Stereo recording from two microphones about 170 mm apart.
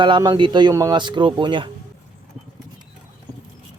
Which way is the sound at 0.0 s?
25° right (ahead or behind).